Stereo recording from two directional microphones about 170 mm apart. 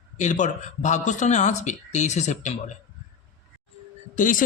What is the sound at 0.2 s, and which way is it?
A man's voice, 45° left (ahead or behind).